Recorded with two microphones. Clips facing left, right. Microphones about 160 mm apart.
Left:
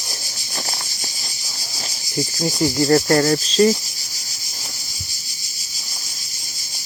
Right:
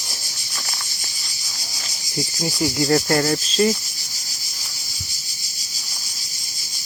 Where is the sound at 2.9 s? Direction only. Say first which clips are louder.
Left 4 dB; 10° right (ahead or behind).